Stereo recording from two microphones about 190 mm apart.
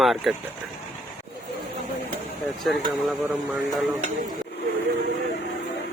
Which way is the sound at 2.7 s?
Centre (ahead or behind).